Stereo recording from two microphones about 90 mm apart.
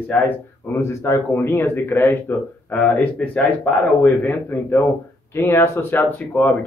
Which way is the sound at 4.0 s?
20° left (ahead or behind).